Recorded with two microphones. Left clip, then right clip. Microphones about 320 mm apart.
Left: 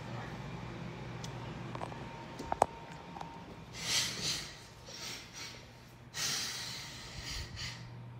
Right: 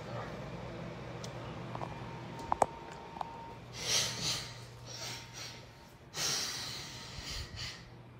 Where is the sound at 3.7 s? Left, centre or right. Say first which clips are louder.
Right 1 dB; centre.